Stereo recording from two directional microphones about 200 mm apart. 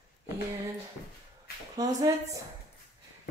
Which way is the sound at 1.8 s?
15° right (ahead or behind).